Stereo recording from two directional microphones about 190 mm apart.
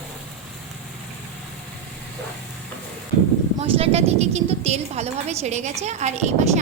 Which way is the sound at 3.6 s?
30° right (ahead or behind).